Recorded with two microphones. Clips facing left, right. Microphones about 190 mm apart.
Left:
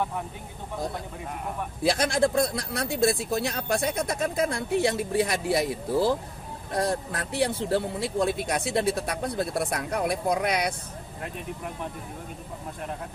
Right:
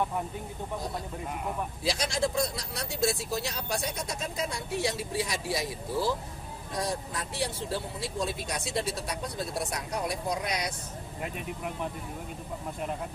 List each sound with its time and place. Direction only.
1.8 s speech: 55° left (ahead or behind)
11.2 s speech: 5° right (ahead or behind)